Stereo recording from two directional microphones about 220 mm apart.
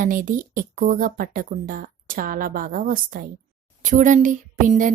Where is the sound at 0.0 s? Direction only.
35° right (ahead or behind).